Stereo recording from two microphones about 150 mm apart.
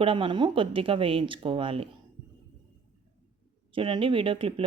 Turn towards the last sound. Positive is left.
turn(degrees=-35)  # may be behind; listen again after turning